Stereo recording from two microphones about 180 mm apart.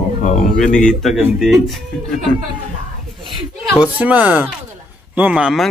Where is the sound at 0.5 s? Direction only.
5° left (ahead or behind).